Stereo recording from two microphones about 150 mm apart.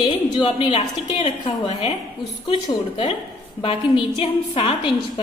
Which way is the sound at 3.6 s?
35° left (ahead or behind).